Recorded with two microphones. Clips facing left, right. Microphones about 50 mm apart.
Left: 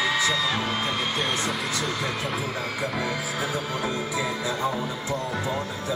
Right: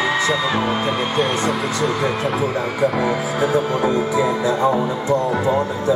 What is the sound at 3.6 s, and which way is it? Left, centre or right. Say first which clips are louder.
Speech: right 10 dB; centre.